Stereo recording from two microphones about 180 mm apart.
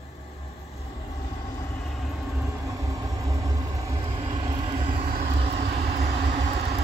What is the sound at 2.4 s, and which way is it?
Vehicle, 20° right (ahead or behind).